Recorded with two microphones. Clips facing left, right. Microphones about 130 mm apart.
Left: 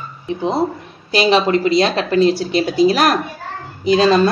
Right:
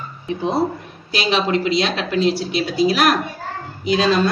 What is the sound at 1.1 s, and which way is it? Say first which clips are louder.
A woman's voice: left 5 dB; 40° left (ahead or behind).